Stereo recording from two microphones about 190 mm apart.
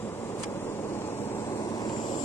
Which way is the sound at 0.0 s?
10° left (ahead or behind).